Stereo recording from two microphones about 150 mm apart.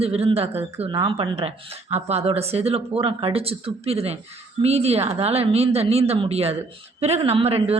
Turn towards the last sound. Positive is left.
turn(degrees=-40)  # may be behind; listen again after turning